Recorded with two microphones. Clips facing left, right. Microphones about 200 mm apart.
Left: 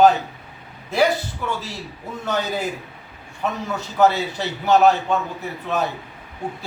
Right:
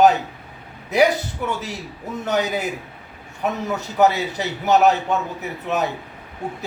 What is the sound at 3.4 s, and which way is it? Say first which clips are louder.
A man's voice: right 2 dB; 15° right (ahead or behind).